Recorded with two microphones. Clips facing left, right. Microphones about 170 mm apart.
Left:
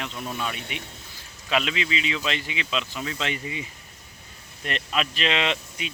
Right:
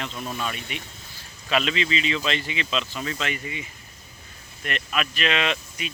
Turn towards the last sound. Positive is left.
turn(degrees=25)  # may be behind; listen again after turning